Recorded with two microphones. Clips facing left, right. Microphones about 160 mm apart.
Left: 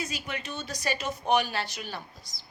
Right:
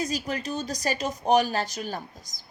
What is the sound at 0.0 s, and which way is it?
A woman's voice, 40° right (ahead or behind).